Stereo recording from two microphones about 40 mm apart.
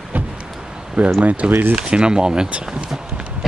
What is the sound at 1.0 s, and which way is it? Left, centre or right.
Speech, right.